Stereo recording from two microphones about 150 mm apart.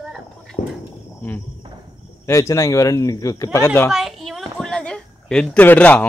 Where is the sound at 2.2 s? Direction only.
20° left (ahead or behind).